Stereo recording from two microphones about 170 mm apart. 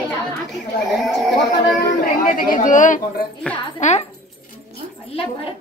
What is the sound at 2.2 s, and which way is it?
A woman's voice, 55° left (ahead or behind).